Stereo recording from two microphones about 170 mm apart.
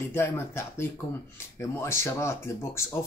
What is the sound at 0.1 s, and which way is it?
Speech, 15° left (ahead or behind).